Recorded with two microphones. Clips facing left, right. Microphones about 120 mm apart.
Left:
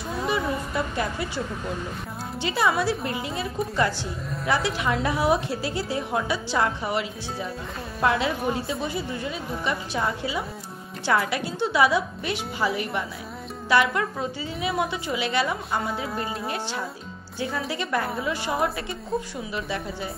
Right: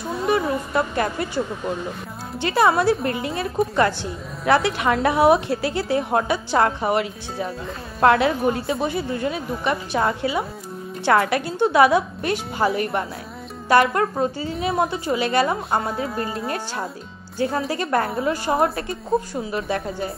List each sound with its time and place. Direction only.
0.3 s a sound: 55° right (ahead or behind)
2.4 s a woman's voice: 55° right (ahead or behind)
4.5 s a woman's voice: 60° right (ahead or behind)